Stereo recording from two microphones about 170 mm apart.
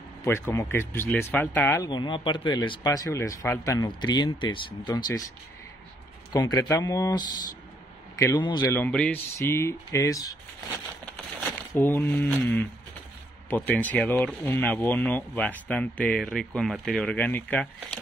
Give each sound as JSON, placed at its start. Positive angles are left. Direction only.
{"t": 0.2, "sound": "speech", "side_deg": 15}
{"t": 1.9, "sound": "speech", "side_deg": 25}
{"t": 6.3, "sound": "speech", "side_deg": 25}
{"t": 8.7, "sound": "speech", "side_deg": 10}
{"t": 11.7, "sound": "speech", "side_deg": 10}